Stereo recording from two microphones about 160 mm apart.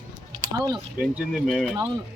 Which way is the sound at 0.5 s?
25° right (ahead or behind).